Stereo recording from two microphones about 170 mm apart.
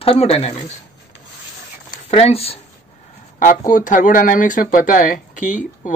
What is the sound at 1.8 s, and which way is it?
Speech, 35° left (ahead or behind).